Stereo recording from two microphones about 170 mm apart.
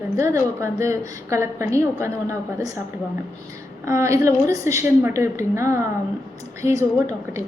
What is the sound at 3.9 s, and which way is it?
A woman's voice, 15° right (ahead or behind).